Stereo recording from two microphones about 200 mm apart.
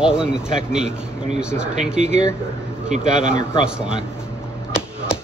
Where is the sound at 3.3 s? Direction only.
35° right (ahead or behind).